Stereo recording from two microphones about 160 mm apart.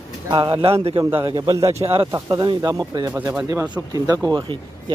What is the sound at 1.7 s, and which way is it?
Speech, 35° right (ahead or behind).